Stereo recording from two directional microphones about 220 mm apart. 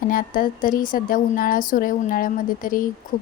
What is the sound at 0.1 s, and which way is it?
Speech, 40° left (ahead or behind).